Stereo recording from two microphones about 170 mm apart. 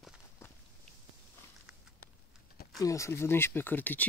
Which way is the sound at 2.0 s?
65° left (ahead or behind).